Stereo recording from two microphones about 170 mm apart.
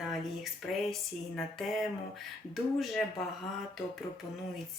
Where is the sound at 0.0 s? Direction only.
Centre (ahead or behind).